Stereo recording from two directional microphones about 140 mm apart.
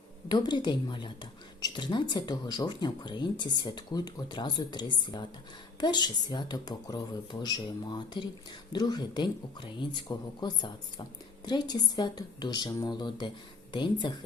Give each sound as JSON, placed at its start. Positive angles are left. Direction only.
{"t": 0.3, "sound": "a woman's voice", "side_deg": 30}